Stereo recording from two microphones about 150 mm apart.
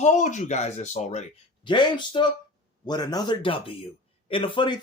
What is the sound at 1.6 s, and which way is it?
Speech, 30° left (ahead or behind).